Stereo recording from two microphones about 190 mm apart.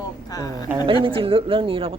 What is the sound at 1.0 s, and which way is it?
Speech, 30° right (ahead or behind).